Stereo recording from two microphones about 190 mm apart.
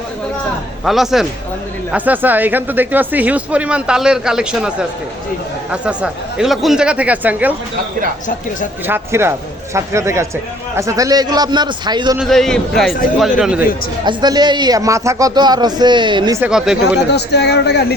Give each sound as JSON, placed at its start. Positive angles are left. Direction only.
{"t": 0.9, "sound": "speech", "side_deg": 0}
{"t": 8.9, "sound": "a man's voice", "side_deg": -10}
{"t": 12.1, "sound": "speech", "side_deg": 0}
{"t": 14.0, "sound": "a man's voice", "side_deg": -25}
{"t": 16.4, "sound": "speech", "side_deg": -5}
{"t": 17.1, "sound": "speech", "side_deg": 60}